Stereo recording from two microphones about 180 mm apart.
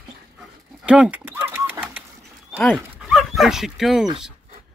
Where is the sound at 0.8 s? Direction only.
5° right (ahead or behind).